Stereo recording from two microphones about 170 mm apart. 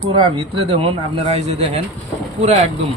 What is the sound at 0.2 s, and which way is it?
Speech, 35° right (ahead or behind).